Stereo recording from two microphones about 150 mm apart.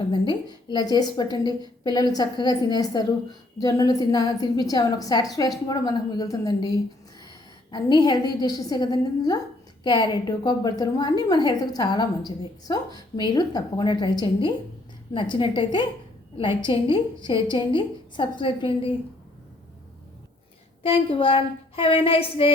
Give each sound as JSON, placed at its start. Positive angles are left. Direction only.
{"t": 0.1, "sound": "a woman's voice", "side_deg": 30}
{"t": 20.8, "sound": "a woman's voice", "side_deg": 35}